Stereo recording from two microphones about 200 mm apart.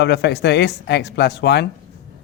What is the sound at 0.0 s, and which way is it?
Speech, 55° left (ahead or behind).